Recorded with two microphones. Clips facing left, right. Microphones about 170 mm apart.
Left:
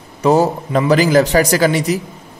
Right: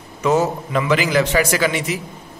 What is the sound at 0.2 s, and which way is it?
A man's voice, 35° left (ahead or behind).